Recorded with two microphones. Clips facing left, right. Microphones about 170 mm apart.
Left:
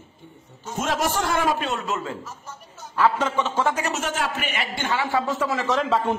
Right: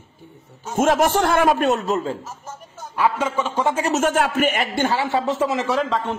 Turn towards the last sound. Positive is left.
turn(degrees=5)  # may be behind; listen again after turning